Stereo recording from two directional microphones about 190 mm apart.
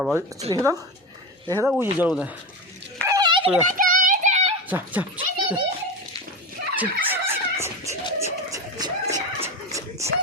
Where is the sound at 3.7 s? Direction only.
45° right (ahead or behind).